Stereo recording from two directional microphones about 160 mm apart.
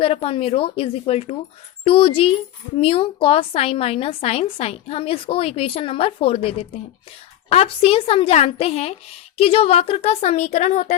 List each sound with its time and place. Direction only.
0.0 s a woman's voice: 35° left (ahead or behind)